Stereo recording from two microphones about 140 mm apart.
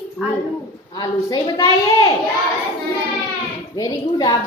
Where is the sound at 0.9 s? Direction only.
30° left (ahead or behind).